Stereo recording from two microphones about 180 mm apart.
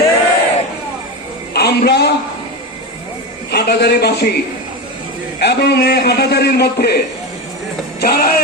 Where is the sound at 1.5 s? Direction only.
65° left (ahead or behind).